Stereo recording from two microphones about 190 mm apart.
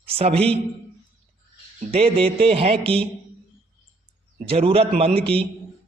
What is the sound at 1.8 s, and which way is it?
Speech, 30° right (ahead or behind).